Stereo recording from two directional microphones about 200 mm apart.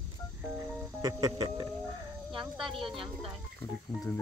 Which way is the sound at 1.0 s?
20° right (ahead or behind).